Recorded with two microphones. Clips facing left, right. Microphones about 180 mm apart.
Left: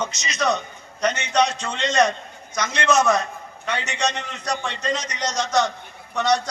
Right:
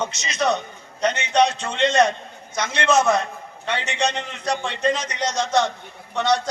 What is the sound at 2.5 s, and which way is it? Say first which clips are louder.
A man's voice: right 1 dB; 30° right (ahead or behind).